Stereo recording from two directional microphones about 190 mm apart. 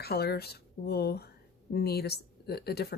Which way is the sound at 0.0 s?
55° left (ahead or behind).